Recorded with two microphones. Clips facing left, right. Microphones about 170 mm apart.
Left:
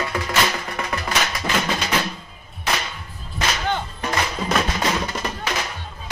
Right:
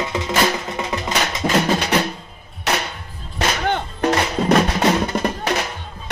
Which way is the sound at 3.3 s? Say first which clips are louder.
Right 3 dB; 65° right (ahead or behind).